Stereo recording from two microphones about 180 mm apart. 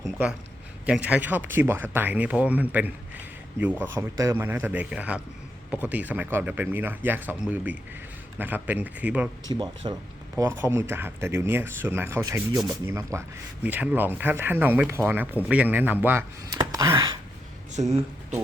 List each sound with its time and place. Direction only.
0.9 s speech: 5° right (ahead or behind)
9.5 s speech: 25° right (ahead or behind)
17.7 s speech: 40° right (ahead or behind)